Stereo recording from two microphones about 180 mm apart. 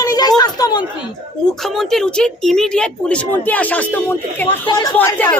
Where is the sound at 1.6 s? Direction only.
Centre (ahead or behind).